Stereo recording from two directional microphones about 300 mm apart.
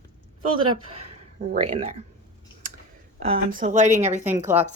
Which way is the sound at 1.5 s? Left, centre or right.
Right.